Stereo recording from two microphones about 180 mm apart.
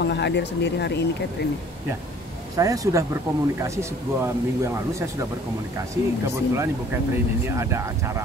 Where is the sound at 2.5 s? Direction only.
20° right (ahead or behind).